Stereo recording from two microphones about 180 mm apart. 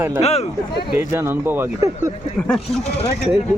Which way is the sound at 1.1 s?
10° right (ahead or behind).